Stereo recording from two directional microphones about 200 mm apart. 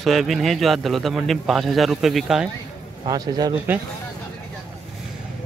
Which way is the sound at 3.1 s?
20° right (ahead or behind).